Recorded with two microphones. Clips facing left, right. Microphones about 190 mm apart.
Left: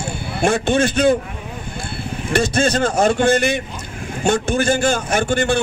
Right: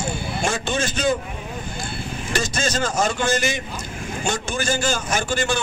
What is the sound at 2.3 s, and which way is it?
A man's voice, 60° left (ahead or behind).